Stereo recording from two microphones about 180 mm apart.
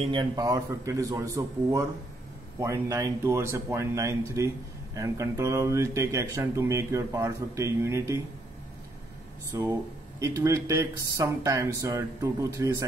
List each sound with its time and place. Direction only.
0.0 s speech: 25° right (ahead or behind)
9.5 s speech: 15° right (ahead or behind)